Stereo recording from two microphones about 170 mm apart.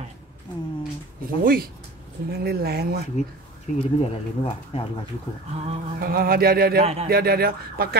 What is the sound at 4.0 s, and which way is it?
Speech, 35° left (ahead or behind).